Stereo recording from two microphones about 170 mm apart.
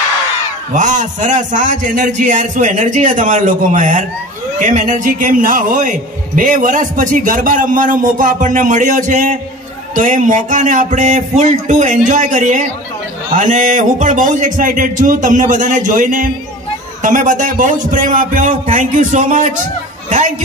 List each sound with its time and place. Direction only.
0.7 s a man's voice: 45° right (ahead or behind)